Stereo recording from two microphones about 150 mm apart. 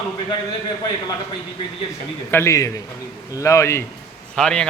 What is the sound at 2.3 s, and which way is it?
Speech, 15° left (ahead or behind).